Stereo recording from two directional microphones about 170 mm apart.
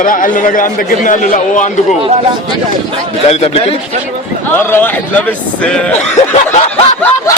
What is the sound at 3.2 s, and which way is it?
Speech, 40° left (ahead or behind).